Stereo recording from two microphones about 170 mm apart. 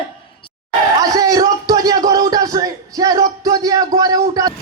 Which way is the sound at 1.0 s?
20° right (ahead or behind).